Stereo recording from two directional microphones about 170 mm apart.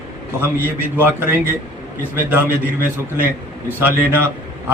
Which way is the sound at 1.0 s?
10° right (ahead or behind).